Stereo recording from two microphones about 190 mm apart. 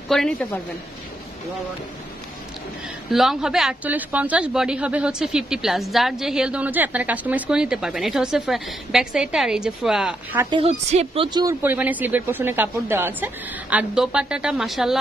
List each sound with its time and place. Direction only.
0.1 s a woman's voice: 5° left (ahead or behind)
3.1 s a woman's voice: centre (ahead or behind)
10.5 s a woman's voice: 35° right (ahead or behind)
11.2 s speech: 20° right (ahead or behind)
11.6 s speech: 10° right (ahead or behind)